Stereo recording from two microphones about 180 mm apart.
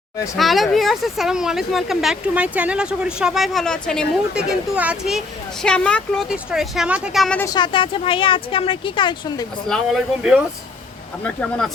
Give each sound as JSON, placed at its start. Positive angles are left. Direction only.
{"t": 0.3, "sound": "speech", "side_deg": 0}
{"t": 7.3, "sound": "a woman's voice", "side_deg": 20}
{"t": 9.6, "sound": "speech", "side_deg": 0}